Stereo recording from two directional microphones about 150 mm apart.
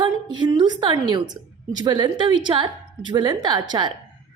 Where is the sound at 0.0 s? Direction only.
30° right (ahead or behind).